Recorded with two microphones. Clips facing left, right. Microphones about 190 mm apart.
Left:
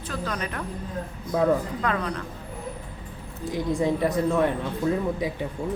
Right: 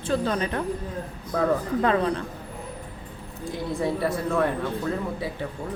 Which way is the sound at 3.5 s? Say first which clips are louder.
Left 3 dB; 15° left (ahead or behind).